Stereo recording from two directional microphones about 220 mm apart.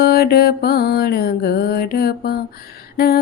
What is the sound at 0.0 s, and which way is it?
Music, 45° left (ahead or behind).